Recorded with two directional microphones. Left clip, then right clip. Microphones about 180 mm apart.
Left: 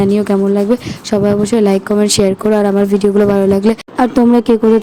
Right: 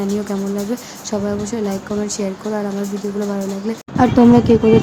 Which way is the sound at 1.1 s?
40° left (ahead or behind).